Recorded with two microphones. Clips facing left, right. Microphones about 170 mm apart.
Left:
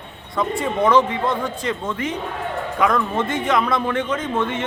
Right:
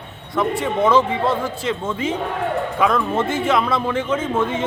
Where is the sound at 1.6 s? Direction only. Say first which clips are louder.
Right 2 dB; 90° right.